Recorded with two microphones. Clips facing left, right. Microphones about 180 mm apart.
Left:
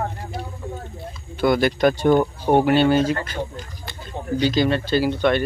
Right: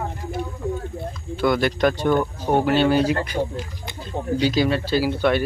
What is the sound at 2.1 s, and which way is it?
Speech, 20° left (ahead or behind).